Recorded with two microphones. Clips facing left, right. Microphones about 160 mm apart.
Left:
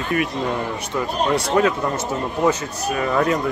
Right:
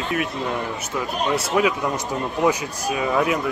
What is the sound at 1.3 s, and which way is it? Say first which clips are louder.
Speech: left 2 dB; 5° right (ahead or behind).